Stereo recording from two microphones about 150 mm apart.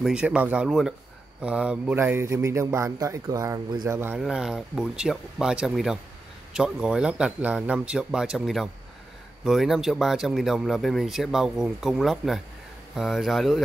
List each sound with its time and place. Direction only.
0.0 s speech: 5° right (ahead or behind)
1.4 s a sound: 5° right (ahead or behind)
4.2 s speech: 5° right (ahead or behind)